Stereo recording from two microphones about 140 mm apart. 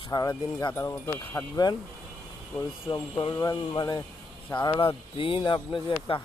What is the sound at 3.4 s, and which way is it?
Speech, 25° left (ahead or behind).